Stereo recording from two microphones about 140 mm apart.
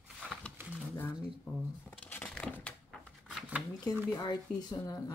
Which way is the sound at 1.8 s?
10° left (ahead or behind).